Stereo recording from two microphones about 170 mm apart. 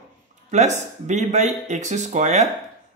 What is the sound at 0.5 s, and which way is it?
A man's voice, 45° right (ahead or behind).